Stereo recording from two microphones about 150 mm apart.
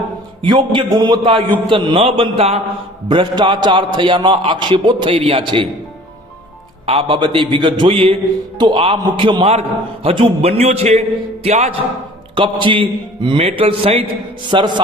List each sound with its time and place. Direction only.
0.5 s a man's voice: 30° right (ahead or behind)
6.8 s a man's voice: 35° right (ahead or behind)
12.3 s a man's voice: 30° right (ahead or behind)